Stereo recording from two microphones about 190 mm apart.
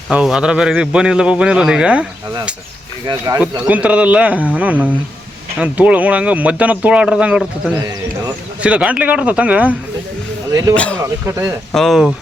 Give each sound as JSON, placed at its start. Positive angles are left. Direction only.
{"t": 0.1, "sound": "speech", "side_deg": -5}
{"t": 3.1, "sound": "speech", "side_deg": -15}
{"t": 8.6, "sound": "speech", "side_deg": -5}
{"t": 10.8, "sound": "a man's voice", "side_deg": 5}
{"t": 11.3, "sound": "speech", "side_deg": -15}
{"t": 11.7, "sound": "speech", "side_deg": 0}